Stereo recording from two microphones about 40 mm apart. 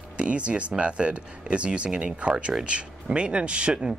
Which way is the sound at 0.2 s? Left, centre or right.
Right.